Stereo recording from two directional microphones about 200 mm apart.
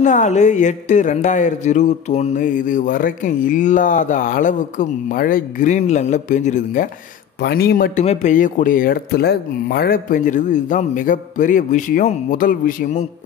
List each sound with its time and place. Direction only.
0.0 s a woman's voice: 35° left (ahead or behind)
7.4 s speech: 50° left (ahead or behind)
8.0 s a woman's voice: 35° left (ahead or behind)